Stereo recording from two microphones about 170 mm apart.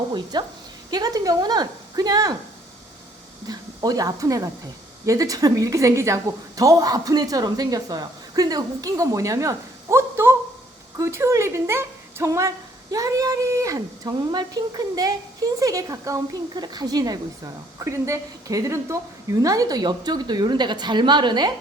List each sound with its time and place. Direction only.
0.1 s speech: 25° right (ahead or behind)
3.4 s speech: 20° right (ahead or behind)